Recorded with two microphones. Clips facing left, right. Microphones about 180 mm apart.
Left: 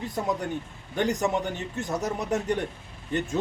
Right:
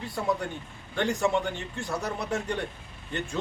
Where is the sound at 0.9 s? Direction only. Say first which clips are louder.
Left 1 dB; 20° left (ahead or behind).